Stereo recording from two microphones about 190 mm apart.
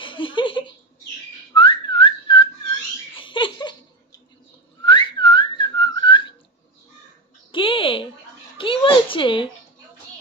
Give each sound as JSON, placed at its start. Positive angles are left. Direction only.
{"t": 0.0, "sound": "chuckle", "side_deg": 25}
{"t": 1.5, "sound": "whistling", "side_deg": 25}
{"t": 3.2, "sound": "laughter", "side_deg": 25}
{"t": 4.8, "sound": "whistling", "side_deg": 25}
{"t": 7.5, "sound": "a sound", "side_deg": 25}